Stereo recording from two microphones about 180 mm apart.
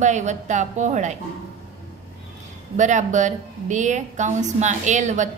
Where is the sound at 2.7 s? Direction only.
40° right (ahead or behind).